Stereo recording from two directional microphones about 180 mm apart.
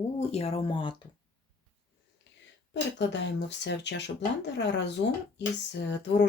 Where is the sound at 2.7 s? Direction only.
75° left (ahead or behind).